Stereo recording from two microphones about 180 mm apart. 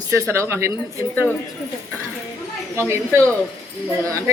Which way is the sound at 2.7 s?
15° right (ahead or behind).